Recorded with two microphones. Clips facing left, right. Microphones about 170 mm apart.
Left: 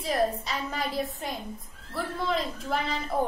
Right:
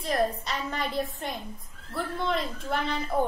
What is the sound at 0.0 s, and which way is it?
A child's voice, centre (ahead or behind).